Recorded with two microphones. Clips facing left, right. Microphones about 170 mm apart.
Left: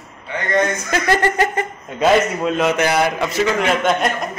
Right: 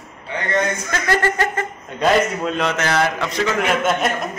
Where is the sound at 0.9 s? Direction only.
20° left (ahead or behind).